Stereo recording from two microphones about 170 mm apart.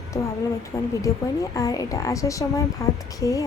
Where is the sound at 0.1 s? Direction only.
15° left (ahead or behind).